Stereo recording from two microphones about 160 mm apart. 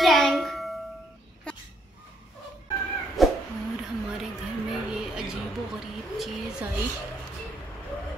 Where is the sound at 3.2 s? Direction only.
Centre (ahead or behind).